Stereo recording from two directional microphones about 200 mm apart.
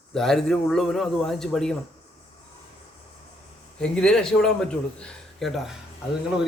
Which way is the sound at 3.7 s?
5° left (ahead or behind).